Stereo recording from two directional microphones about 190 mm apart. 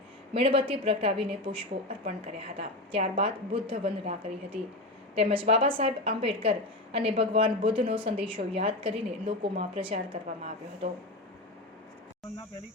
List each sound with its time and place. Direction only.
0.3 s a woman's voice: 30° right (ahead or behind)